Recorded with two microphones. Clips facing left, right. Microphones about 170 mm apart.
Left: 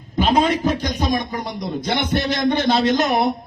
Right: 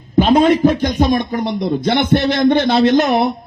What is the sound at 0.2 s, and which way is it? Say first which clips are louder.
A man's voice: right 7 dB; 50° right (ahead or behind).